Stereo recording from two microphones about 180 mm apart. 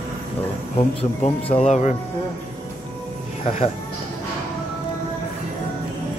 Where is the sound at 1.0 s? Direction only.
30° left (ahead or behind).